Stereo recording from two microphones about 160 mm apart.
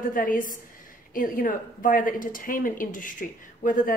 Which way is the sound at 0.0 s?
60° left (ahead or behind).